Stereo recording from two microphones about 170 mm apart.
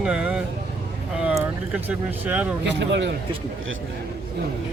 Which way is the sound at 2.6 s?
90° right.